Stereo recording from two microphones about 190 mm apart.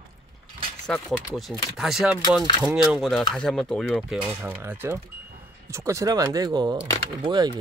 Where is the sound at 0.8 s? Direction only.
Centre (ahead or behind).